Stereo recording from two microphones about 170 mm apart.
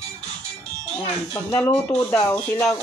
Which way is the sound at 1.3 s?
20° left (ahead or behind).